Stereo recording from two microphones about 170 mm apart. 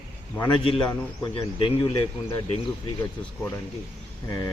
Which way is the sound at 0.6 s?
30° left (ahead or behind).